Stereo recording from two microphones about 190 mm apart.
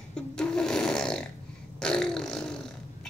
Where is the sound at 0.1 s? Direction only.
5° left (ahead or behind).